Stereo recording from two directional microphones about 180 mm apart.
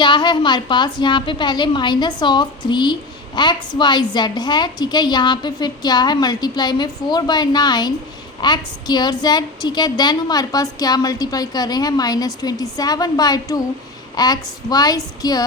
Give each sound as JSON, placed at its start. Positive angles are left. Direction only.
{"t": 0.0, "sound": "a woman's voice", "side_deg": 25}